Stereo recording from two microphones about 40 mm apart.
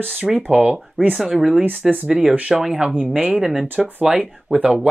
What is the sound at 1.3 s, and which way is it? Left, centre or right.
Speech, centre.